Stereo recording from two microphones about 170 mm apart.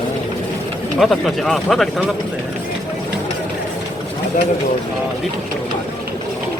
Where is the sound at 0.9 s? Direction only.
Centre (ahead or behind).